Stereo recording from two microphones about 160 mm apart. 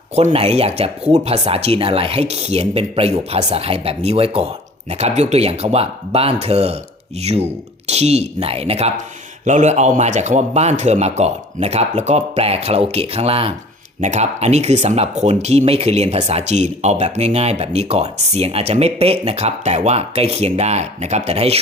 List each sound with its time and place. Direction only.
0.2 s speech: 40° right (ahead or behind)
9.4 s speech: 50° right (ahead or behind)